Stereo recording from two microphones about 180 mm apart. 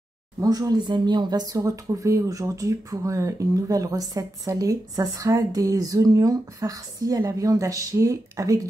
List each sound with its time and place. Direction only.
0.4 s speech: 20° right (ahead or behind)